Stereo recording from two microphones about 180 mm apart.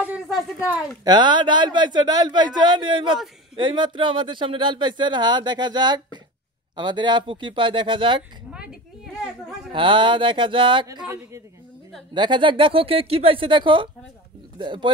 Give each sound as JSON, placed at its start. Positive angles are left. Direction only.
{"t": 0.0, "sound": "speech", "side_deg": -5}
{"t": 1.0, "sound": "speech", "side_deg": -25}
{"t": 8.5, "sound": "a sound", "side_deg": -5}
{"t": 9.7, "sound": "speech", "side_deg": -25}
{"t": 12.1, "sound": "speech", "side_deg": -25}